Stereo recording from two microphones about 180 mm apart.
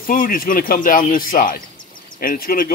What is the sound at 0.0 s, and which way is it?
Speech, 50° left (ahead or behind).